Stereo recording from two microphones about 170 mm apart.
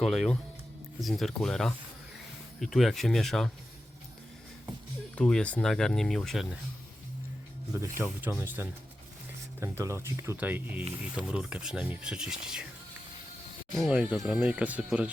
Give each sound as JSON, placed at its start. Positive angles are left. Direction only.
{"t": 0.0, "sound": "speech", "side_deg": 0}
{"t": 5.1, "sound": "speech", "side_deg": 5}
{"t": 7.7, "sound": "speech", "side_deg": -15}
{"t": 13.8, "sound": "speech", "side_deg": -5}